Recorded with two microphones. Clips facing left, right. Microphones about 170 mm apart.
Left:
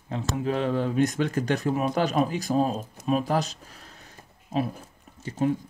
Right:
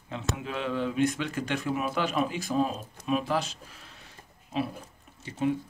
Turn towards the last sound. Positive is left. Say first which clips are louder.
# left 3 dB
turn(degrees=45)  # may be behind; listen again after turning